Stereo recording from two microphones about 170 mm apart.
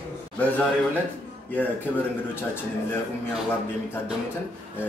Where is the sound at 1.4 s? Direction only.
10° left (ahead or behind).